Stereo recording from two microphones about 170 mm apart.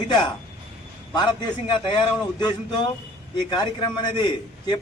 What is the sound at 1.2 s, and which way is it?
A man's voice, 25° left (ahead or behind).